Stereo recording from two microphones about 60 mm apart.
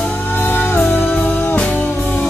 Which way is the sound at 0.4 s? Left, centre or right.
Left.